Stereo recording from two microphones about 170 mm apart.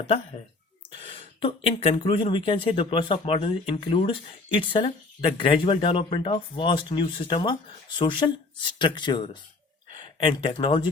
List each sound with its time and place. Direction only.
0.9 s speech: 35° left (ahead or behind)